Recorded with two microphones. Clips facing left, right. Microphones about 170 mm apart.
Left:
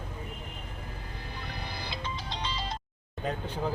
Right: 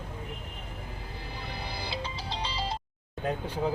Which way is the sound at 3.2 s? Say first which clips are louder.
Right 2 dB; 10° right (ahead or behind).